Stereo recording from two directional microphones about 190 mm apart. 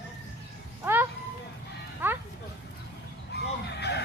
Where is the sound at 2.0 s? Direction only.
10° right (ahead or behind).